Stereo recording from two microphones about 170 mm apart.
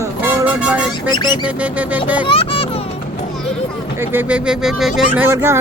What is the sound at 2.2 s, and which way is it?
Music, 35° left (ahead or behind).